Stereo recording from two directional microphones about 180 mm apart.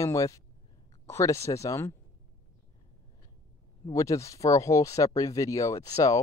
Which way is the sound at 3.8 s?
20° left (ahead or behind).